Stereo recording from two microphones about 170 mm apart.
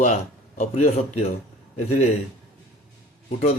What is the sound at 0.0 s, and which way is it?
A man's voice, 45° left (ahead or behind).